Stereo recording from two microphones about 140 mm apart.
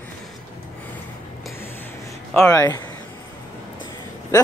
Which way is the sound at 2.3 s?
20° left (ahead or behind).